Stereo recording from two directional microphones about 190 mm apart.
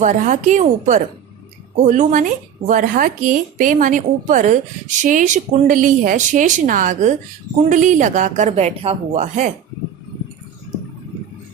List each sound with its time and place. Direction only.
0.0 s a woman's voice: 40° right (ahead or behind)